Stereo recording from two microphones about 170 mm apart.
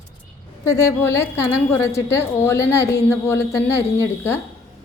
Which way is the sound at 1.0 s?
15° left (ahead or behind).